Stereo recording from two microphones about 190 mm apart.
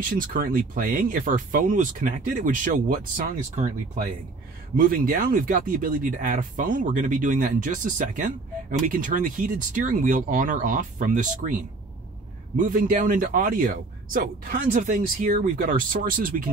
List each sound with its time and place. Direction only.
0.3 s speech: 45° right (ahead or behind)
12.5 s speech: 45° right (ahead or behind)